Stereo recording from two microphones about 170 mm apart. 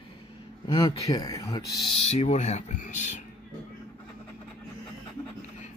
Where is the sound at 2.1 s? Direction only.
40° left (ahead or behind).